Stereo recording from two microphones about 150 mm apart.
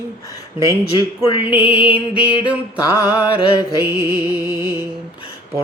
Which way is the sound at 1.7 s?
10° right (ahead or behind).